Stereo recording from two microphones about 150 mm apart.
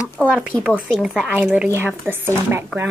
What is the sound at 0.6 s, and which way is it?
Speech, 10° right (ahead or behind).